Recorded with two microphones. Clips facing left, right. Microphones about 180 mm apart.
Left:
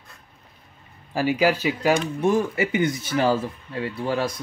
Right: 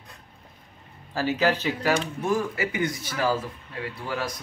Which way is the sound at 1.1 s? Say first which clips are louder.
Left 3 dB; 15° left (ahead or behind).